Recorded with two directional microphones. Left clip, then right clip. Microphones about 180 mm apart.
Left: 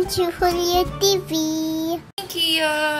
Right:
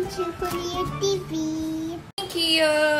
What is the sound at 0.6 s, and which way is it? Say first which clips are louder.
Music: left 7 dB; 60° left (ahead or behind).